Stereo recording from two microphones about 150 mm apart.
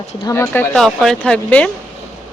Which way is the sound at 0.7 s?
Centre (ahead or behind).